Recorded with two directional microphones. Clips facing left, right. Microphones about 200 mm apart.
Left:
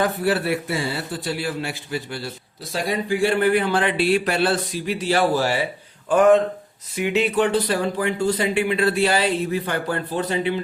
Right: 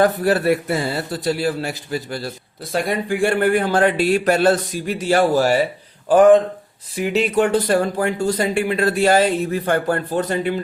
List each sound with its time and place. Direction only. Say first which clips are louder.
0.0 s speech: right 5 dB; 45° right (ahead or behind)
2.7 s speech: right 2 dB; 55° right (ahead or behind); by 7.2 s 35° right (ahead or behind)
7.3 s speech: right 4 dB; 45° right (ahead or behind)